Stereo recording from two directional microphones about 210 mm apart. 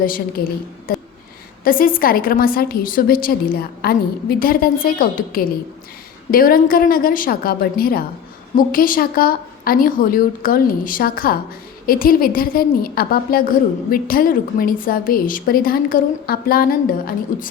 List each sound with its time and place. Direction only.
0.0 s a woman's voice: 40° left (ahead or behind)